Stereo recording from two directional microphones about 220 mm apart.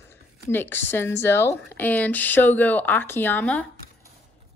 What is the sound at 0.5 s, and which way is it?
Speech, 10° left (ahead or behind).